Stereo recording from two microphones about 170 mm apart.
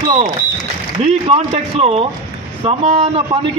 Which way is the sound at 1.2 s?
35° right (ahead or behind).